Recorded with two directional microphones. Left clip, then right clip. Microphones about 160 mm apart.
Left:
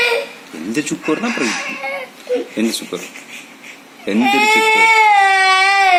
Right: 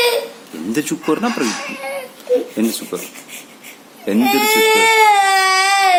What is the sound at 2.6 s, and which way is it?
Speech, 5° right (ahead or behind).